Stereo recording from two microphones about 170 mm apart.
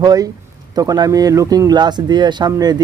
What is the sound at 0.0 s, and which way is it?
Speech, 20° right (ahead or behind).